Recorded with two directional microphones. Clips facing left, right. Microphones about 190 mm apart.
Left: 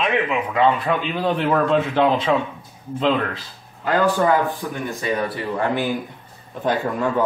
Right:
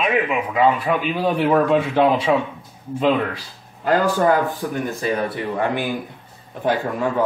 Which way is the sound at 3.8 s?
45° right (ahead or behind).